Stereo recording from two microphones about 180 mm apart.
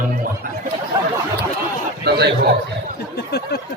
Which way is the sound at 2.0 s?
65° right (ahead or behind).